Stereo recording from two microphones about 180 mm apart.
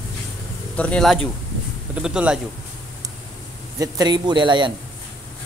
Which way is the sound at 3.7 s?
20° right (ahead or behind).